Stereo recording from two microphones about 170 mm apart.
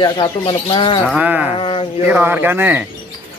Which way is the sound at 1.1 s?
5° right (ahead or behind).